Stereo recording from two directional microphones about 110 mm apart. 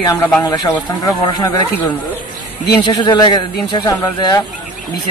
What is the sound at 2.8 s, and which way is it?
Speech, 45° left (ahead or behind).